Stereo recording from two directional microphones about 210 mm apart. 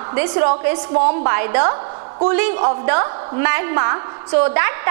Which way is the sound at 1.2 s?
20° right (ahead or behind).